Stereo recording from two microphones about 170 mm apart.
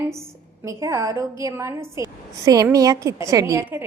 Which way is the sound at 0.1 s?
15° right (ahead or behind).